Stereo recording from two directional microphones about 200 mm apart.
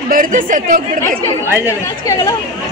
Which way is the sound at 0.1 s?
45° right (ahead or behind).